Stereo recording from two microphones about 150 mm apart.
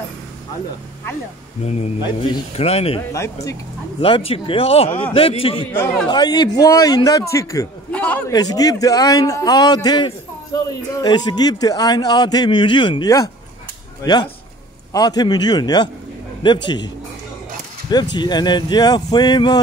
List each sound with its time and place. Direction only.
1.6 s speech: 45° left (ahead or behind)
4.0 s speech: 35° left (ahead or behind)
4.8 s a man's voice: 15° left (ahead or behind)
5.1 s speech: 40° left (ahead or behind)
6.0 s a man's voice: 30° left (ahead or behind)
7.9 s a sound: 10° left (ahead or behind)
8.3 s a man's voice: 25° left (ahead or behind)